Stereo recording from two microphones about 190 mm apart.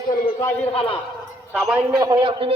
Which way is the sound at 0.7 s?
30° left (ahead or behind).